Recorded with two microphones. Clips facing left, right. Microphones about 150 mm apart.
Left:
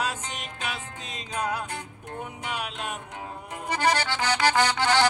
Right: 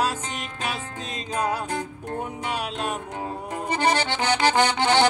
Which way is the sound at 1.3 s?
40° right (ahead or behind).